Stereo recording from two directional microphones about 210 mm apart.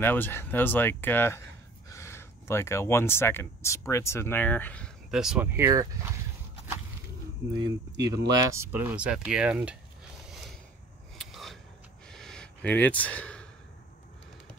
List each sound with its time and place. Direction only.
0.0 s speech: 10° left (ahead or behind); by 5.9 s 15° right (ahead or behind)
7.5 s speech: 20° right (ahead or behind)
11.1 s a sound: centre (ahead or behind)